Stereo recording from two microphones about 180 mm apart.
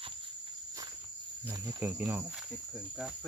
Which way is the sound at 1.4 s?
15° right (ahead or behind).